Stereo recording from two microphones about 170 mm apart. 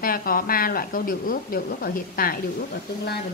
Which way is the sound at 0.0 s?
60° left (ahead or behind).